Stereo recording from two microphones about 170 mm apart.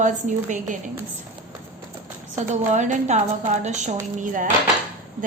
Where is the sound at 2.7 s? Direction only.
45° right (ahead or behind).